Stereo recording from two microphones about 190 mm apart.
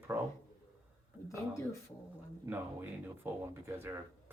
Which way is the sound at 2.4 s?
10° right (ahead or behind).